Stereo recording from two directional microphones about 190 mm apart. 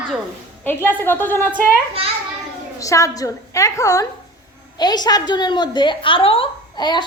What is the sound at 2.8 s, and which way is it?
A woman's voice, 15° left (ahead or behind).